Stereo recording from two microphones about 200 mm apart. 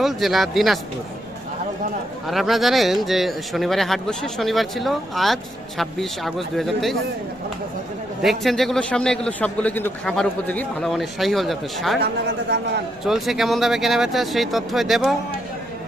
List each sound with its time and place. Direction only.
0.0 s speech: centre (ahead or behind)
2.2 s speech: centre (ahead or behind)
8.2 s speech: centre (ahead or behind)
12.5 s a man's voice: 55° right (ahead or behind)
13.1 s speech: centre (ahead or behind)